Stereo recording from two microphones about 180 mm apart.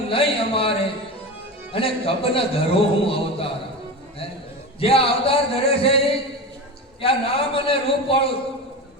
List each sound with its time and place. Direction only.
0.1 s a sound: 30° left (ahead or behind)
1.7 s a man's voice: 30° left (ahead or behind)
4.8 s a man's voice: 30° left (ahead or behind)